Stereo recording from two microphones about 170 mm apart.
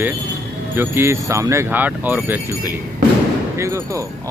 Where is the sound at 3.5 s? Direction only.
15° right (ahead or behind).